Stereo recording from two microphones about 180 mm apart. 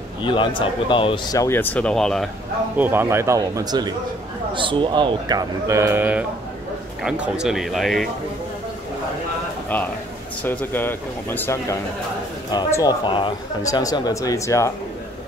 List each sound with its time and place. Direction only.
0.2 s speech: 25° left (ahead or behind); by 2.2 s 5° left (ahead or behind)
2.8 s a man's voice: 10° right (ahead or behind)
10.4 s speech: 10° left (ahead or behind)